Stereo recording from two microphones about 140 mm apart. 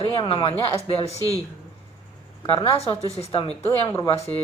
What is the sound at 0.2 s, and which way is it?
Speech, 40° left (ahead or behind).